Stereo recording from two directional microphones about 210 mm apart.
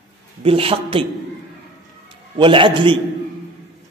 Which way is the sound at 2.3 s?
25° right (ahead or behind).